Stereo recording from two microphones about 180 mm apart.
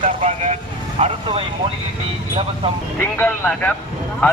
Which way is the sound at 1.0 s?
35° right (ahead or behind).